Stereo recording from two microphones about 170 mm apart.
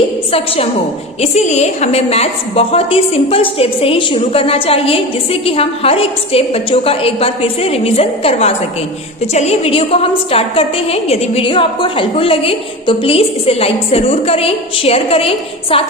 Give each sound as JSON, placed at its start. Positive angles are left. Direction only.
{"t": 0.3, "sound": "a woman's voice", "side_deg": 35}